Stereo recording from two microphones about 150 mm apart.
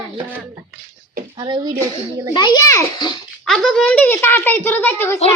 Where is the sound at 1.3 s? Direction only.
30° right (ahead or behind).